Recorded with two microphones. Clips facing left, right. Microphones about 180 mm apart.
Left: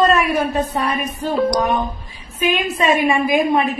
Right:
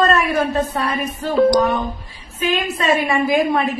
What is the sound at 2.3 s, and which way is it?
A woman's voice, 15° left (ahead or behind).